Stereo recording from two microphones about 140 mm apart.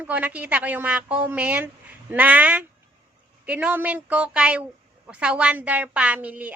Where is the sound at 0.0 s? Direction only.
10° right (ahead or behind).